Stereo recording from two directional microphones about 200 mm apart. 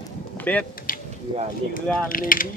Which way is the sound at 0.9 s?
45° left (ahead or behind).